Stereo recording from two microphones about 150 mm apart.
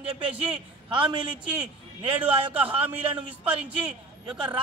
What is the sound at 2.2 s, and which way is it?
Speech, 10° right (ahead or behind).